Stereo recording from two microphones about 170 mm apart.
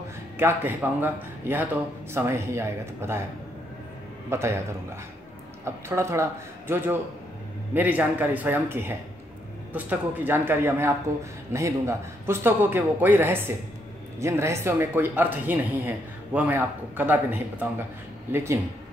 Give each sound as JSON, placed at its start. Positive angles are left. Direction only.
{"t": 0.4, "sound": "a man's voice", "side_deg": -15}
{"t": 4.3, "sound": "a man's voice", "side_deg": -15}
{"t": 5.9, "sound": "a man's voice", "side_deg": -15}
{"t": 7.7, "sound": "a man's voice", "side_deg": -10}